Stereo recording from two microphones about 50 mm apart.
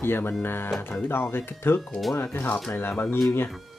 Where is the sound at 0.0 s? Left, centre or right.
Left.